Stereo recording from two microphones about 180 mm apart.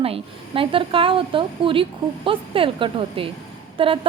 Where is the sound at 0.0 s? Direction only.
30° right (ahead or behind).